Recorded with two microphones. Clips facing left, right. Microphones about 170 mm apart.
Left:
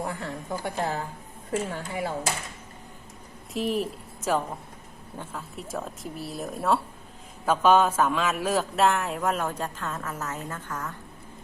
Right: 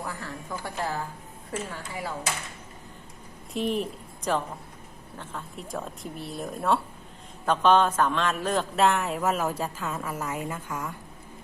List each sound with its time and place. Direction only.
0.0 s a woman's voice: 25° left (ahead or behind)
3.5 s a woman's voice: centre (ahead or behind)